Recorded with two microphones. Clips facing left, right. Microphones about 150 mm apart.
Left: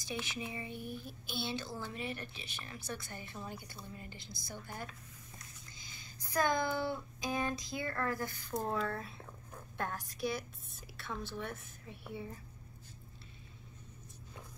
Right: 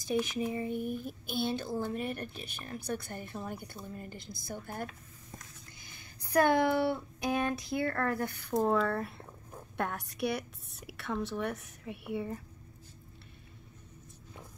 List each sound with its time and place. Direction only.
0.1 s speech: 45° right (ahead or behind)
5.4 s vehicle: 60° right (ahead or behind)
6.3 s speech: 70° right (ahead or behind)